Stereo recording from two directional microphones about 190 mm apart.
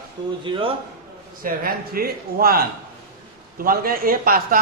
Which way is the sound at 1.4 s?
50° right (ahead or behind).